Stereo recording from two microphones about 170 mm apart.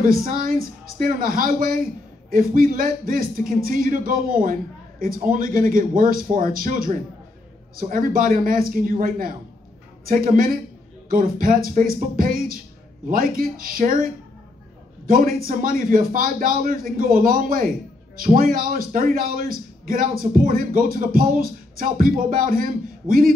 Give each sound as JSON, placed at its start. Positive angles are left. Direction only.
{"t": 0.0, "sound": "a man's voice", "side_deg": -55}
{"t": 10.0, "sound": "a man's voice", "side_deg": -55}